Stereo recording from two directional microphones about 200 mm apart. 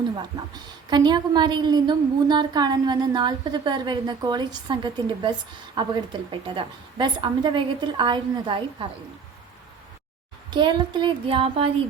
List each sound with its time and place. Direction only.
0.2 s a woman's voice: 20° right (ahead or behind)
10.5 s a woman's voice: 25° right (ahead or behind)